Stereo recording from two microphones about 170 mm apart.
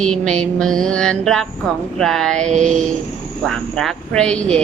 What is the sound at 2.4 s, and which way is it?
Music, 45° right (ahead or behind).